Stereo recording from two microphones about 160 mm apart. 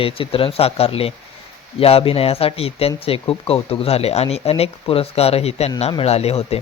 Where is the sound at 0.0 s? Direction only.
35° left (ahead or behind).